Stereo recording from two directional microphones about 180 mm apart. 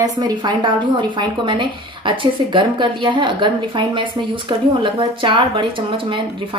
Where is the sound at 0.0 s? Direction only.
20° right (ahead or behind).